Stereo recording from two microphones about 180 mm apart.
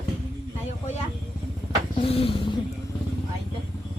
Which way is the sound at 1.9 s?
30° left (ahead or behind).